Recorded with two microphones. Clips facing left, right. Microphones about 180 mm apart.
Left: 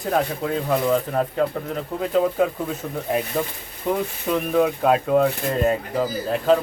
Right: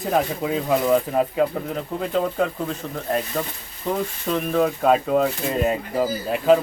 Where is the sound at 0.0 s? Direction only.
5° right (ahead or behind).